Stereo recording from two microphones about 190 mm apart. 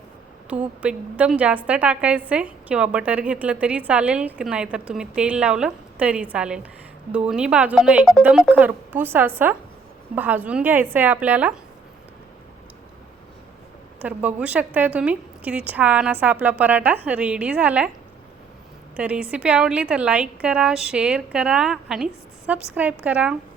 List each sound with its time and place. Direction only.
0.5 s a woman's voice: 5° right (ahead or behind)
14.0 s a woman's voice: 10° right (ahead or behind)
18.9 s a woman's voice: 5° right (ahead or behind)